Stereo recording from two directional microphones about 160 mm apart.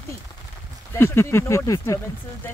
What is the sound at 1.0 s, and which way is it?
Speech, 15° left (ahead or behind).